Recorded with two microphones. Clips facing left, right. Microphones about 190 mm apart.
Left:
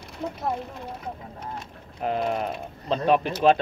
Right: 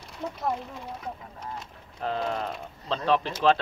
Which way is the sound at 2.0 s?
15° left (ahead or behind).